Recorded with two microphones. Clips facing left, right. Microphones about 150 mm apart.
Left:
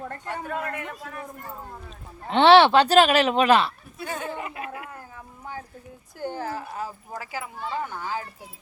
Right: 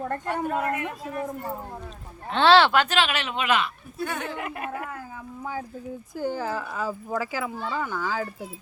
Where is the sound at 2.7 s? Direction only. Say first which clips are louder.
Left 6 dB; 35° left (ahead or behind).